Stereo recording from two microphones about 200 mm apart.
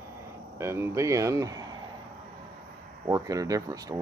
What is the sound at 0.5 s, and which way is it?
Speech, 15° right (ahead or behind).